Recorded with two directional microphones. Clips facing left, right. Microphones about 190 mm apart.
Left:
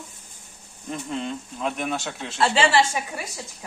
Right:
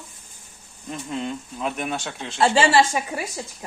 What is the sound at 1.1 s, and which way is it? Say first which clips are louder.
A man's voice: right 2 dB; 5° right (ahead or behind).